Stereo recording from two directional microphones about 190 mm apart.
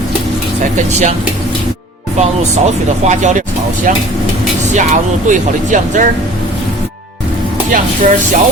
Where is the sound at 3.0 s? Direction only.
40° right (ahead or behind).